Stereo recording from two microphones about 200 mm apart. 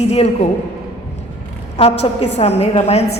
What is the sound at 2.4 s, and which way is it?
Speech, 30° left (ahead or behind).